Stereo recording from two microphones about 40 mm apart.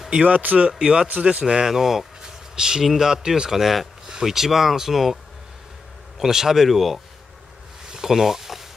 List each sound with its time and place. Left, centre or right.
0.2 s speech: right
0.6 s speech: right
1.7 s speech: centre
7.9 s a sound: centre